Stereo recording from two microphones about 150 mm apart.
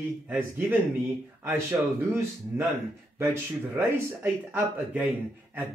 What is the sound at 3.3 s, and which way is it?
Speech, 15° right (ahead or behind).